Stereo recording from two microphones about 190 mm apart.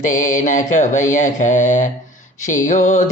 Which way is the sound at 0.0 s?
40° left (ahead or behind).